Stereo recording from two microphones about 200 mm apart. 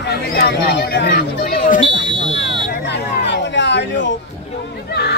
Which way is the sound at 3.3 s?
60° left (ahead or behind).